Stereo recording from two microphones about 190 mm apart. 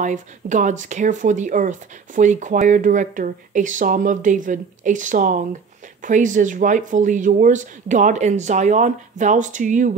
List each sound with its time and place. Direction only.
0.0 s speech: 40° right (ahead or behind)